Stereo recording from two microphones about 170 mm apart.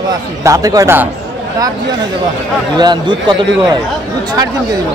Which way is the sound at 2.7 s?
25° right (ahead or behind).